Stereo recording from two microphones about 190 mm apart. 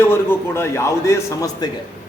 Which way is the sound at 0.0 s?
10° left (ahead or behind).